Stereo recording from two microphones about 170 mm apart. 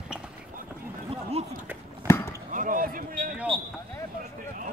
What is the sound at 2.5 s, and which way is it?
Basketball bounce, 55° right (ahead or behind).